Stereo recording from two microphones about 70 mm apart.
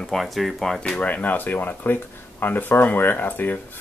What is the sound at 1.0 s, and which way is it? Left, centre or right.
Speech, left.